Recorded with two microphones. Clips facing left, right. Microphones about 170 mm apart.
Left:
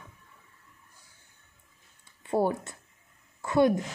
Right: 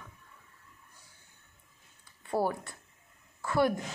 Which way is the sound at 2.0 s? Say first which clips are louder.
Left 4 dB; 25° left (ahead or behind).